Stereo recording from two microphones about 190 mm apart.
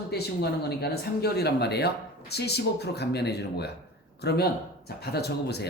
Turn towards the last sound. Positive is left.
turn(degrees=60)  # may be behind; listen again after turning